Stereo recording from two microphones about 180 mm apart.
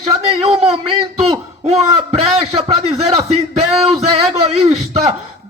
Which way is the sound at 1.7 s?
35° right (ahead or behind).